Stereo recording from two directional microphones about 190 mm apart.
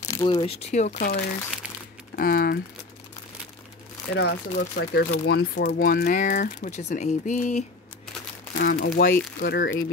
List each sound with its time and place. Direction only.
0.0 s speech: 20° left (ahead or behind); by 2.6 s 50° left (ahead or behind)
4.1 s speech: 60° left (ahead or behind); by 7.6 s 40° left (ahead or behind)
8.5 s speech: 50° left (ahead or behind)